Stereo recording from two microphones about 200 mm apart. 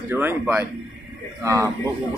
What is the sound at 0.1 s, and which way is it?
Speech, 10° right (ahead or behind).